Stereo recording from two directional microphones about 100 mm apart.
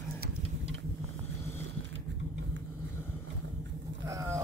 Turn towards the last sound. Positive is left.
turn(degrees=-30)  # may be behind; listen again after turning